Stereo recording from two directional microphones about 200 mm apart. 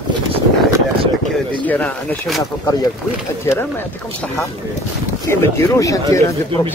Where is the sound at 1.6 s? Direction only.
10° left (ahead or behind).